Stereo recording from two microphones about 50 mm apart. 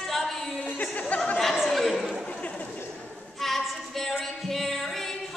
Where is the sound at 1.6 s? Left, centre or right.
Centre.